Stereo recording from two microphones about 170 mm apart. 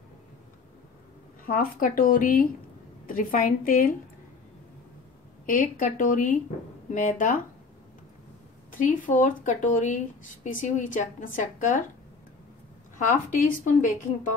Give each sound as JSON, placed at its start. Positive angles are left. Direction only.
{"t": 1.4, "sound": "a woman's voice", "side_deg": 55}
{"t": 5.5, "sound": "a woman's voice", "side_deg": 50}
{"t": 8.7, "sound": "a woman's voice", "side_deg": 50}
{"t": 12.9, "sound": "a woman's voice", "side_deg": 50}